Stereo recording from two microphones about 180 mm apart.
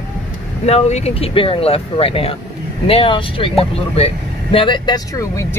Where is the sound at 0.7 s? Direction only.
35° left (ahead or behind).